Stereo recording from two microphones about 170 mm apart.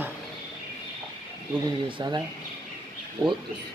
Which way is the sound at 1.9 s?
25° right (ahead or behind).